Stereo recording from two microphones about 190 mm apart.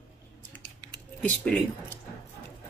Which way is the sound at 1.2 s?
5° left (ahead or behind).